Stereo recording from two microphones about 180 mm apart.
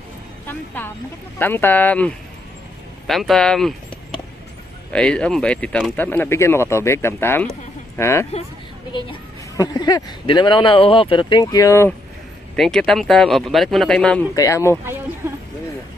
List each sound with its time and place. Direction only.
0.5 s speech: 10° left (ahead or behind)
4.9 s speech: 5° left (ahead or behind)
9.6 s speech: 20° left (ahead or behind)
12.5 s speech: centre (ahead or behind)
14.3 s speech: 15° left (ahead or behind)